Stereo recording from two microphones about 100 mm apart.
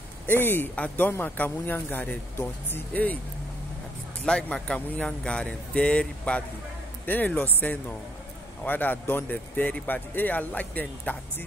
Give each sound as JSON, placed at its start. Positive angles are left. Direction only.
{"t": 0.3, "sound": "speech", "side_deg": 20}
{"t": 4.2, "sound": "speech", "side_deg": 10}